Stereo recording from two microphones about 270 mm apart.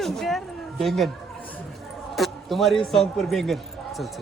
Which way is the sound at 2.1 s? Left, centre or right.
Centre.